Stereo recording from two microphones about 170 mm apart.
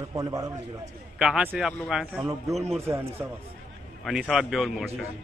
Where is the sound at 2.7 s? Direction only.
15° right (ahead or behind).